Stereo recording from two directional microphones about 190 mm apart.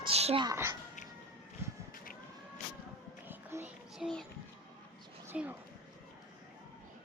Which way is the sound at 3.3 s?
10° right (ahead or behind).